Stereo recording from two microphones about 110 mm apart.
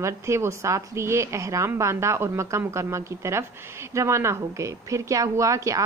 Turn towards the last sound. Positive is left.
turn(degrees=-30)  # may be behind; listen again after turning